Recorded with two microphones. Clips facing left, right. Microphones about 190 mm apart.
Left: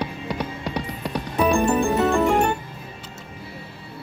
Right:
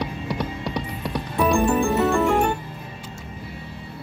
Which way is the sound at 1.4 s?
20° left (ahead or behind).